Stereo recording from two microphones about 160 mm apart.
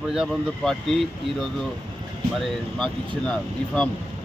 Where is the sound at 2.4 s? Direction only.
5° left (ahead or behind).